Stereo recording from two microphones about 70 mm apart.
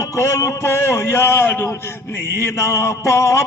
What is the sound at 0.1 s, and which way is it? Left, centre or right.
Speech, left.